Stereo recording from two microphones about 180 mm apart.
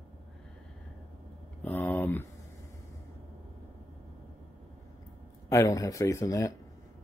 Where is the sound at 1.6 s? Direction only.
10° left (ahead or behind).